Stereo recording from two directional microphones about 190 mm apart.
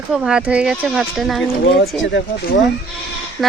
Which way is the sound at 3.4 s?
Centre (ahead or behind).